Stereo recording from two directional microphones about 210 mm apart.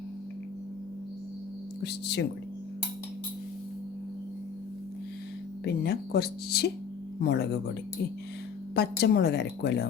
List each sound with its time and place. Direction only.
1.8 s a woman's voice: 55° left (ahead or behind)
5.6 s a woman's voice: 50° left (ahead or behind)